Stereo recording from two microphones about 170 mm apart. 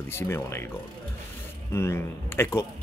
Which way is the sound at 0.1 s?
15° left (ahead or behind).